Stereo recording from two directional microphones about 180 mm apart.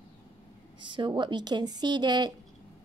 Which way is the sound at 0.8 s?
25° right (ahead or behind).